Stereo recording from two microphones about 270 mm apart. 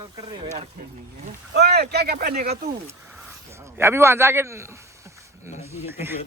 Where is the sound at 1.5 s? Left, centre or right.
Right.